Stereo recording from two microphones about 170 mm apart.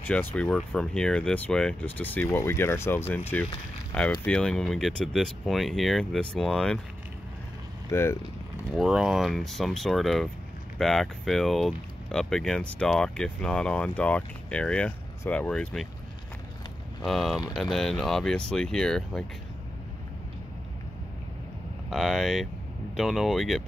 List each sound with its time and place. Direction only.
0.0 s speech: 10° left (ahead or behind)
7.9 s speech: 15° left (ahead or behind)
8.7 s speech: 5° right (ahead or behind)
17.0 s speech: centre (ahead or behind)
21.9 s speech: centre (ahead or behind)